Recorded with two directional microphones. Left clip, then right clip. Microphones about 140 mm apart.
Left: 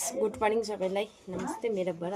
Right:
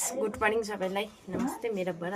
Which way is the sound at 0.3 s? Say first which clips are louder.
Right 2 dB; 20° left (ahead or behind).